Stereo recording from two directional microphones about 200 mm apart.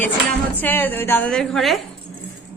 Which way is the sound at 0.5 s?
10° left (ahead or behind).